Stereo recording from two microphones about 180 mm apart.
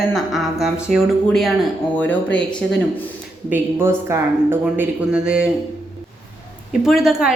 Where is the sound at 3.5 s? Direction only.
15° right (ahead or behind).